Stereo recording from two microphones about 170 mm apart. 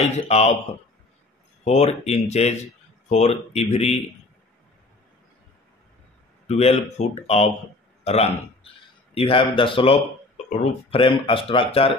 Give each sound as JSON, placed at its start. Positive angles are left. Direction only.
{"t": 0.0, "sound": "speech", "side_deg": 40}
{"t": 1.6, "sound": "speech", "side_deg": 40}
{"t": 6.4, "sound": "a man's voice", "side_deg": 40}